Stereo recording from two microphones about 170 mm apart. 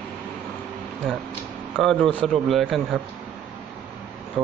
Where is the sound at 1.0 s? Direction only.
Centre (ahead or behind).